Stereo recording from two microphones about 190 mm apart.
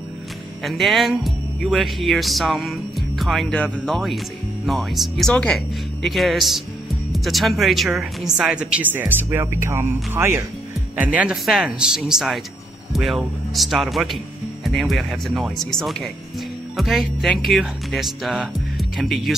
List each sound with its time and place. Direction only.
0.7 s speech: centre (ahead or behind)